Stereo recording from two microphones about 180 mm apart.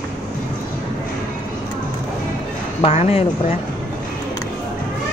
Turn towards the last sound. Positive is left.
turn(degrees=35)  # may be behind; listen again after turning